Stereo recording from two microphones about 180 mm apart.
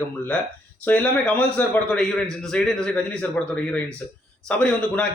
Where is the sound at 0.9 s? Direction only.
10° left (ahead or behind).